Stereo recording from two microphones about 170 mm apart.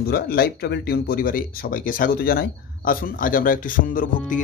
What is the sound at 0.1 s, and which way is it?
Speech, 65° left (ahead or behind).